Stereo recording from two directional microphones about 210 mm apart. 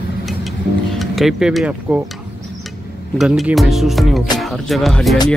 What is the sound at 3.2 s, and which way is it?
Speech, centre (ahead or behind).